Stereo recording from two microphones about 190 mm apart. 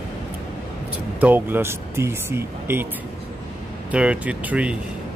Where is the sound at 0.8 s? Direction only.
10° right (ahead or behind).